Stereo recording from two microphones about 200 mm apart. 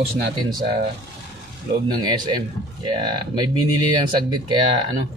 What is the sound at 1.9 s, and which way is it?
Speech, 20° right (ahead or behind).